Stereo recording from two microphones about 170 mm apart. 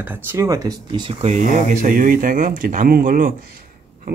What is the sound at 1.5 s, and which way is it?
Speech, 50° right (ahead or behind).